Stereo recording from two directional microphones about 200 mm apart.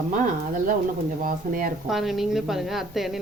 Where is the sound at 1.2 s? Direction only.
45° right (ahead or behind).